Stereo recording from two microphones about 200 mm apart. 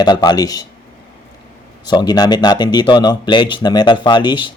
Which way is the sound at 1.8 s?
20° left (ahead or behind).